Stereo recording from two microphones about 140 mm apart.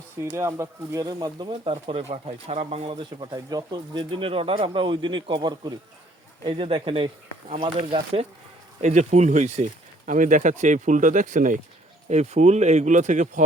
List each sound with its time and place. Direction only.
0.2 s speech: 20° right (ahead or behind); by 8.3 s 45° right (ahead or behind)
8.8 s speech: 55° right (ahead or behind)
10.1 s speech: 70° right (ahead or behind)
12.0 s speech: 50° right (ahead or behind)